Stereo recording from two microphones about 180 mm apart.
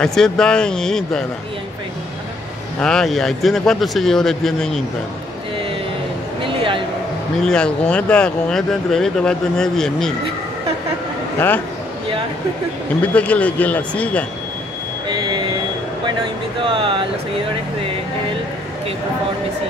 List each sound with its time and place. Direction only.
0.0 s speech: 5° left (ahead or behind)
2.8 s speech: 5° left (ahead or behind)
6.4 s a sound: 30° right (ahead or behind)
7.4 s speech: 5° left (ahead or behind)
11.3 s speech: 10° left (ahead or behind)
13.0 s speech: 5° left (ahead or behind)
15.0 s vehicle: 25° right (ahead or behind)
16.6 s speech: 30° right (ahead or behind)